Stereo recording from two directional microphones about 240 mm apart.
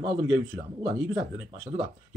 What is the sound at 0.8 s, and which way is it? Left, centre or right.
Speech, centre.